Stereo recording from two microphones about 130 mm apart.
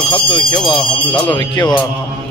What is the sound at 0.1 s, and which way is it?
Speech, 40° left (ahead or behind).